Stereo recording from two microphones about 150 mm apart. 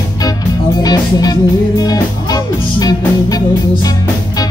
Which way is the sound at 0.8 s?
25° left (ahead or behind).